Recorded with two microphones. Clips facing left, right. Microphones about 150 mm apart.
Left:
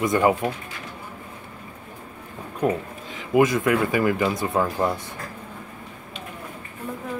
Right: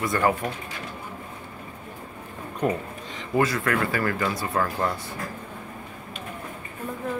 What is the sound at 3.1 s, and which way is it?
Speech, 15° left (ahead or behind).